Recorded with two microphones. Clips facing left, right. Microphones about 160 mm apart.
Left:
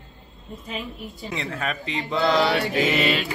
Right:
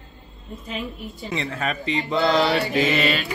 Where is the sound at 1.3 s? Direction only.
Centre (ahead or behind).